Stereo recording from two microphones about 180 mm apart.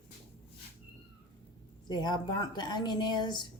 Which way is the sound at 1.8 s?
25° left (ahead or behind).